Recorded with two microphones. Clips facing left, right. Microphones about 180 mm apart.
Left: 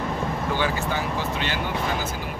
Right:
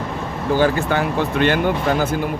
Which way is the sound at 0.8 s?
60° right (ahead or behind).